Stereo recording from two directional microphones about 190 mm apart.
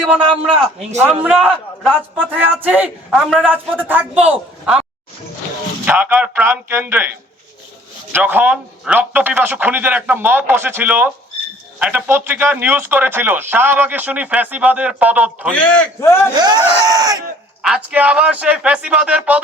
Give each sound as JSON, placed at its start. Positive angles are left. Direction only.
{"t": 0.4, "sound": "speech", "side_deg": 0}
{"t": 2.3, "sound": "speech", "side_deg": -10}
{"t": 5.8, "sound": "speech", "side_deg": -10}
{"t": 8.1, "sound": "speech", "side_deg": -10}
{"t": 15.5, "sound": "a man's voice", "side_deg": 5}
{"t": 16.3, "sound": "speech", "side_deg": -20}
{"t": 17.6, "sound": "speech", "side_deg": -5}